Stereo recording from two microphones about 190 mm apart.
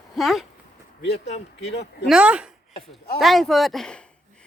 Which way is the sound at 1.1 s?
35° left (ahead or behind).